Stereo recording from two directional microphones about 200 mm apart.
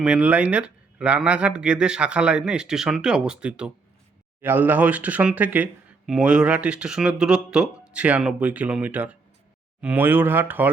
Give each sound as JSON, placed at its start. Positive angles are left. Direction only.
{"t": 0.0, "sound": "speech", "side_deg": -5}